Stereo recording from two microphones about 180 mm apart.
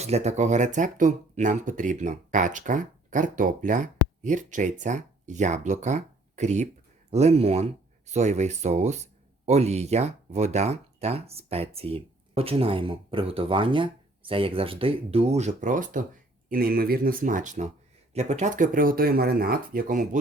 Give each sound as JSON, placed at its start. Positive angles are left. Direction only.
{"t": 0.0, "sound": "speech", "side_deg": -40}